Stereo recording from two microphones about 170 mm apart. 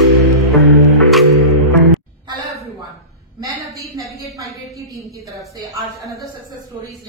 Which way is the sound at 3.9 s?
20° right (ahead or behind).